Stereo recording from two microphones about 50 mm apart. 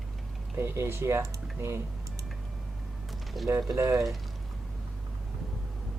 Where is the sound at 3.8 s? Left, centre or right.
Right.